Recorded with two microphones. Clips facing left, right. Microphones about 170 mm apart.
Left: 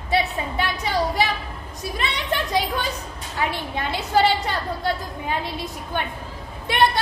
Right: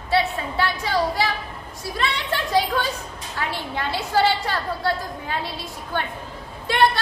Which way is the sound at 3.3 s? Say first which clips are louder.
Left 2 dB; 20° left (ahead or behind).